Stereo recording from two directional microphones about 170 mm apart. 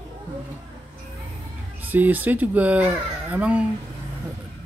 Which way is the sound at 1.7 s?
10° right (ahead or behind).